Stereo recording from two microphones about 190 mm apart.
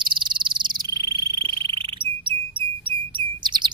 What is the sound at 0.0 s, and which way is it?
Frog, 25° right (ahead or behind).